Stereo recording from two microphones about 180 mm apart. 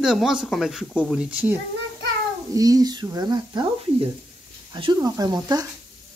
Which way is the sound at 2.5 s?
20° right (ahead or behind).